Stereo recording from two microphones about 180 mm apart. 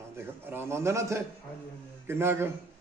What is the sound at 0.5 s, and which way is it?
A man's voice, 15° right (ahead or behind).